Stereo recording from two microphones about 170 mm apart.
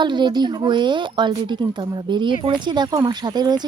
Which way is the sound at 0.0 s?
25° right (ahead or behind).